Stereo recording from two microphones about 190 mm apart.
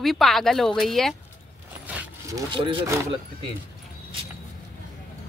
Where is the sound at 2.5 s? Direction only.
25° right (ahead or behind).